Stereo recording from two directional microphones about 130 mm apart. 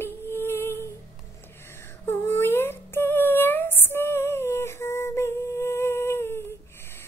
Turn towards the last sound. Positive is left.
turn(degrees=20)  # may be behind; listen again after turning